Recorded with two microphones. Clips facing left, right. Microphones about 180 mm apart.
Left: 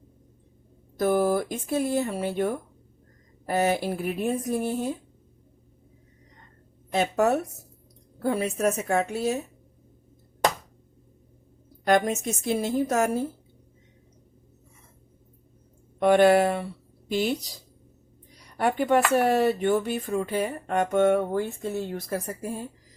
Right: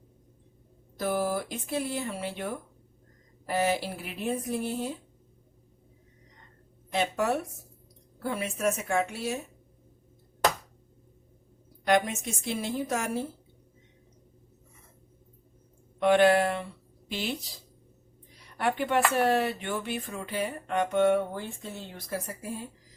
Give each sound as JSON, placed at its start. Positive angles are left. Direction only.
{"t": 0.9, "sound": "speech", "side_deg": 50}
{"t": 6.9, "sound": "a woman's voice", "side_deg": 45}
{"t": 11.9, "sound": "speech", "side_deg": 45}
{"t": 16.0, "sound": "speech", "side_deg": 45}
{"t": 18.5, "sound": "speech", "side_deg": 45}